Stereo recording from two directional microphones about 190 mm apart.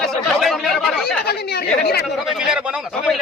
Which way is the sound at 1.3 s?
55° left (ahead or behind).